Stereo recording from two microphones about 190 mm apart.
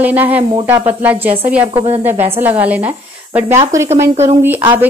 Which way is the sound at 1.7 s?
30° right (ahead or behind).